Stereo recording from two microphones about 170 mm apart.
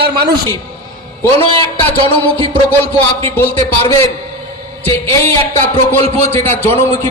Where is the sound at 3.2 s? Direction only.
15° left (ahead or behind).